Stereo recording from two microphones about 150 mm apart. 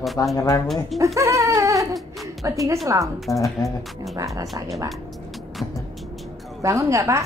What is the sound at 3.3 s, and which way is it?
Speech, 20° left (ahead or behind).